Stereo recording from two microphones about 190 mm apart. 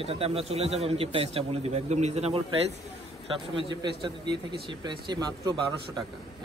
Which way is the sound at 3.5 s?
25° right (ahead or behind).